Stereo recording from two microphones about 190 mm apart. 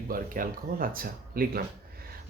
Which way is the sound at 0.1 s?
50° right (ahead or behind).